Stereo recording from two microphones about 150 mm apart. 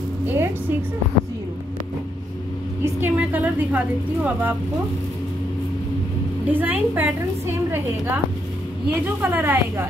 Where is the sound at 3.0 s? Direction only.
10° right (ahead or behind).